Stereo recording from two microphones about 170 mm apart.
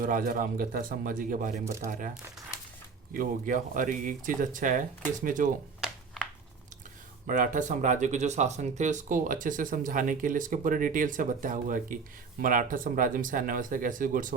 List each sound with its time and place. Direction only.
0.0 s speech: 55° right (ahead or behind)
7.3 s speech: 50° right (ahead or behind)